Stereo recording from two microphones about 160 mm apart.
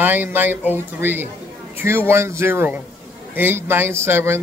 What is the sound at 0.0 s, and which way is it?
A man's voice, 10° right (ahead or behind).